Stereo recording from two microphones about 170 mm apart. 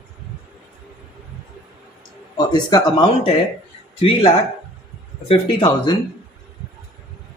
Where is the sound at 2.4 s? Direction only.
25° left (ahead or behind).